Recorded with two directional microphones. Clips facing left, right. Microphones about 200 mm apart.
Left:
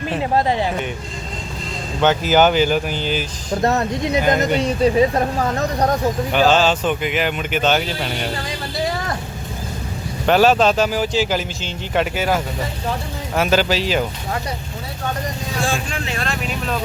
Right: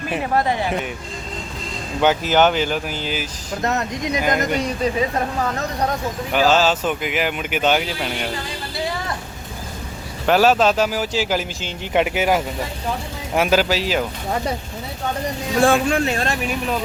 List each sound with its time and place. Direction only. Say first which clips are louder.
0.2 s speech: left 2 dB; 20° left (ahead or behind)
2.2 s speech: left 2 dB; centre (ahead or behind)
3.6 s speech: left 4 dB; 30° left (ahead or behind)
6.3 s speech: even; 5° right (ahead or behind)
10.2 s speech: left 1 dB; 5° right (ahead or behind)
15.6 s speech: right 9 dB; 55° right (ahead or behind)